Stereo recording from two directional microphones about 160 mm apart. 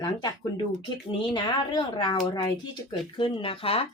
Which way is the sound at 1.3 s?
30° left (ahead or behind).